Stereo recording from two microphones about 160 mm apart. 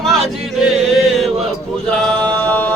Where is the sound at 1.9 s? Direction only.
5° left (ahead or behind).